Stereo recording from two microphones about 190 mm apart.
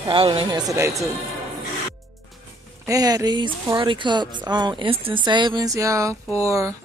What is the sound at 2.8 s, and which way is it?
Speech, 20° right (ahead or behind).